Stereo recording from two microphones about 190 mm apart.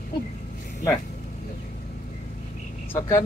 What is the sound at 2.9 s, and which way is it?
Speech, 15° left (ahead or behind).